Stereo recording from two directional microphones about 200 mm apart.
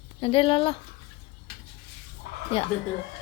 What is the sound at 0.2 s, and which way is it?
Child singing, 25° left (ahead or behind).